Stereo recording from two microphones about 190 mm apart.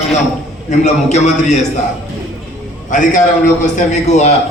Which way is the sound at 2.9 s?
40° left (ahead or behind).